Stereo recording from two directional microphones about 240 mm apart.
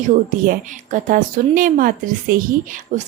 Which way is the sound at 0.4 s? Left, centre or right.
Right.